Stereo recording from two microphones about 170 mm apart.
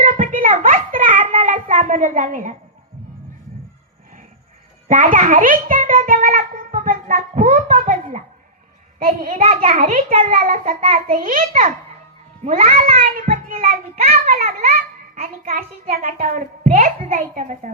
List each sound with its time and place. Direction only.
0.0 s child singing: 50° right (ahead or behind)
1.5 s a sound: 50° right (ahead or behind)
4.9 s a child's voice: 50° right (ahead or behind)
9.4 s a child's voice: 40° right (ahead or behind); by 10.8 s 55° right (ahead or behind)
10.8 s a child's voice: 35° right (ahead or behind)
11.1 s a child's voice: 55° right (ahead or behind)
13.2 s child singing: 35° right (ahead or behind)
14.1 s a sound: 55° right (ahead or behind)
14.6 s a child's voice: 55° right (ahead or behind)